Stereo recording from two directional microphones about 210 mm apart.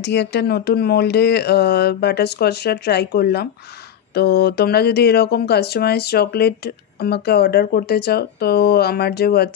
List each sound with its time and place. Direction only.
0.0 s speech: 55° left (ahead or behind)